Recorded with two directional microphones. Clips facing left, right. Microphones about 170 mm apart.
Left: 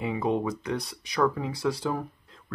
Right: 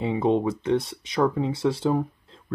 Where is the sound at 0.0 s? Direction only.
25° right (ahead or behind).